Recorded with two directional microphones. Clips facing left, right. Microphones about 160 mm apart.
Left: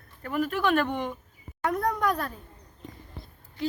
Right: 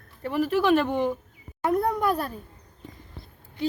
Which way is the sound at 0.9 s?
30° right (ahead or behind).